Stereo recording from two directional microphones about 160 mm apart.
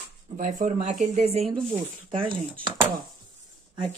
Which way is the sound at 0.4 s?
55° right (ahead or behind).